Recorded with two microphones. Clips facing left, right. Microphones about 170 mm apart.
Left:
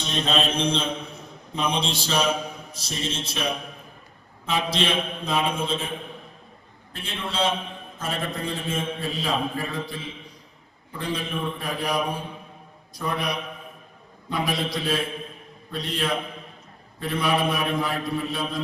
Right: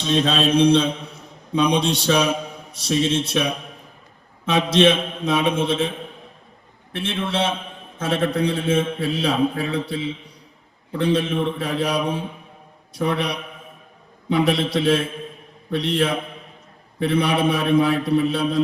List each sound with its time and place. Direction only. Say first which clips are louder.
0.6 s mantra: right 10 dB; 65° right (ahead or behind)
1.5 s a man's voice: right 7 dB; 70° right (ahead or behind)
3.2 s mantra: right 6 dB; 65° right (ahead or behind)
4.4 s a man's voice: right 9 dB; 70° right (ahead or behind)
6.9 s a man's voice: right 7 dB; 70° right (ahead or behind)